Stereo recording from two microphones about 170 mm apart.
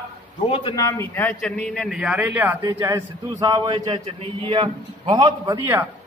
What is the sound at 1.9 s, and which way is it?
A man's voice, 5° right (ahead or behind).